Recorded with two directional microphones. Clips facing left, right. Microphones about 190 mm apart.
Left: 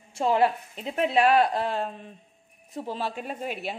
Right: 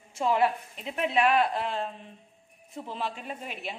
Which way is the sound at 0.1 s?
30° left (ahead or behind).